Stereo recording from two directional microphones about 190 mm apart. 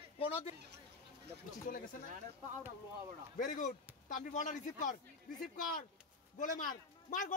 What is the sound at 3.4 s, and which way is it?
A man's voice, 40° left (ahead or behind).